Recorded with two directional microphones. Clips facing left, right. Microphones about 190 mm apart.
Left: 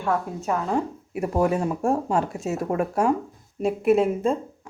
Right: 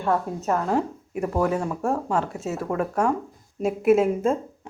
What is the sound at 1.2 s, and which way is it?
Speech, 15° left (ahead or behind).